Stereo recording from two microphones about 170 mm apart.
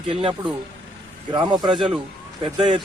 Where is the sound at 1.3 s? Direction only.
25° right (ahead or behind).